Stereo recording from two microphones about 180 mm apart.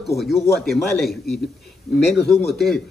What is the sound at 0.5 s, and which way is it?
A man's voice, centre (ahead or behind).